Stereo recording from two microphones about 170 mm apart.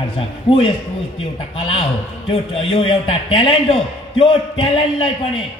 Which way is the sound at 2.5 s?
35° left (ahead or behind).